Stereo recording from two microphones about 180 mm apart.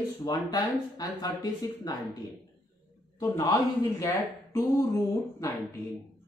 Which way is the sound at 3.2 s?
20° left (ahead or behind).